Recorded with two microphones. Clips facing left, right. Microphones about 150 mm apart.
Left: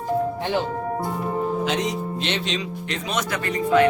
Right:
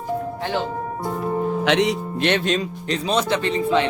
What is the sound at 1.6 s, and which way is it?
Speech, 75° right (ahead or behind).